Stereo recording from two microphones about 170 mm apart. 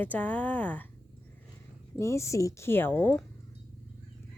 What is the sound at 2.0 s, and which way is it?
Speech, 15° left (ahead or behind).